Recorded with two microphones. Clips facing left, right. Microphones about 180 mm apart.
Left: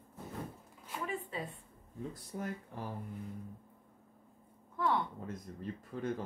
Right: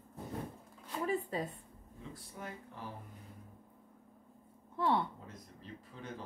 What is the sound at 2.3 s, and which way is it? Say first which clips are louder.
Speech: left 6 dB; 45° left (ahead or behind).